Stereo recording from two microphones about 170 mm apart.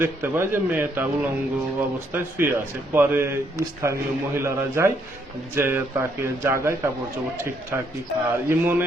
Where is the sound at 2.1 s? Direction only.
10° right (ahead or behind).